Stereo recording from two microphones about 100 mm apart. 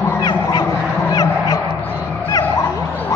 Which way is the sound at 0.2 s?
45° left (ahead or behind).